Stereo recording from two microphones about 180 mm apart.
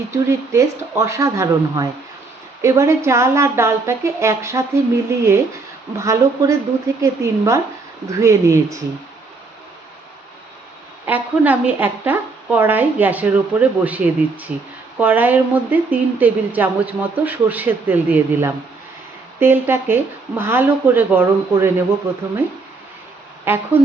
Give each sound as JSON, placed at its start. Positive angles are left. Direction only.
{"t": 0.1, "sound": "a woman's voice", "side_deg": -15}
{"t": 11.0, "sound": "a woman's voice", "side_deg": -10}
{"t": 23.5, "sound": "a woman's voice", "side_deg": -15}